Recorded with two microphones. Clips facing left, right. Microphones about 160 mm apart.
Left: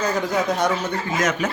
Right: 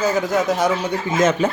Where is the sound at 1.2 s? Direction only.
30° right (ahead or behind).